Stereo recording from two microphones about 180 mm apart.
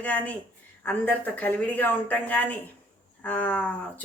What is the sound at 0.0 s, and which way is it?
Speech, 10° left (ahead or behind).